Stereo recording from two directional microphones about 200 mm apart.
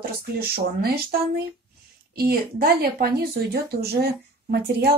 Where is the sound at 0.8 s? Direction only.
50° right (ahead or behind).